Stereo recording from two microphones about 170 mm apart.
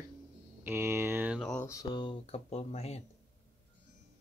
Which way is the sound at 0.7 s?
15° right (ahead or behind).